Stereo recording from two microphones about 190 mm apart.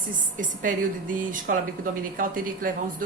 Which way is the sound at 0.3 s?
45° right (ahead or behind).